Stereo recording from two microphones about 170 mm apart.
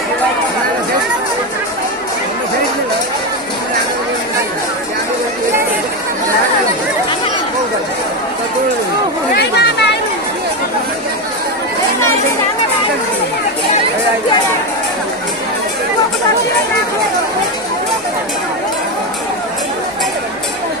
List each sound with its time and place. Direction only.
9.3 s chatter: 80° left